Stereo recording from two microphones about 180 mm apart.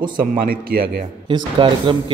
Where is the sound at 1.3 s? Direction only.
30° right (ahead or behind).